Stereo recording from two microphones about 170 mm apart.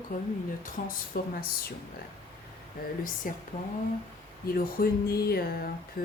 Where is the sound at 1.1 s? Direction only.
65° left (ahead or behind).